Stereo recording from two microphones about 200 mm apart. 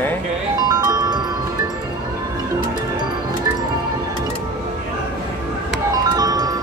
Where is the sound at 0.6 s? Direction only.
20° right (ahead or behind).